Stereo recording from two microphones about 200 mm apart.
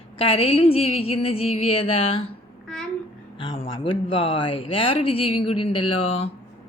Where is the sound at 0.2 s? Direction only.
25° left (ahead or behind).